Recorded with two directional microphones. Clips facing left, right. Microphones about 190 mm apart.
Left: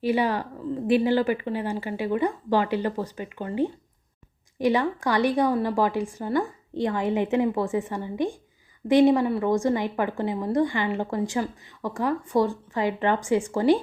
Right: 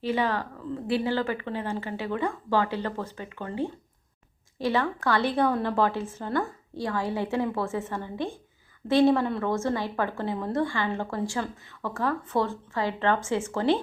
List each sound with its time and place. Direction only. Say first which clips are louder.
0.0 s a woman's voice: left 3 dB; 15° left (ahead or behind)